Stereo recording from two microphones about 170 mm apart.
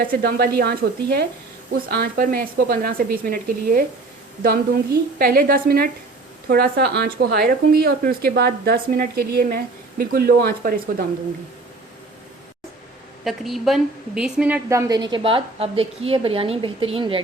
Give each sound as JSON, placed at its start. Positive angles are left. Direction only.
{"t": 0.2, "sound": "a woman's voice", "side_deg": -65}
{"t": 13.2, "sound": "a woman's voice", "side_deg": 0}